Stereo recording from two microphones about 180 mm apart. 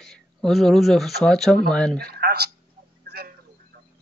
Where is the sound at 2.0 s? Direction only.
60° right (ahead or behind).